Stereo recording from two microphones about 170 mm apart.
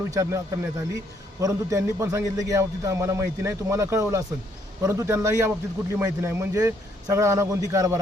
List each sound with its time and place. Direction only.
0.1 s a man's voice: 20° right (ahead or behind)